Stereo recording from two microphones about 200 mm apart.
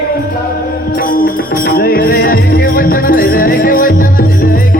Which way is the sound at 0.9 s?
45° left (ahead or behind).